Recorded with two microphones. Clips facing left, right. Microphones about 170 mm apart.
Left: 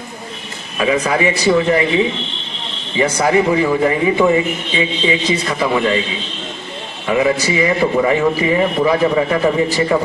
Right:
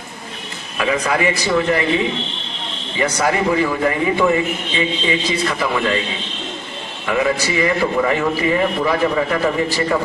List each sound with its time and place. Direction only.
0.7 s a man's voice: 15° left (ahead or behind)
3.0 s a man's voice: 20° left (ahead or behind)
7.1 s a man's voice: 15° left (ahead or behind)